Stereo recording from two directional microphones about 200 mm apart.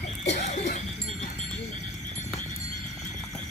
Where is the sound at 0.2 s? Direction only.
35° left (ahead or behind).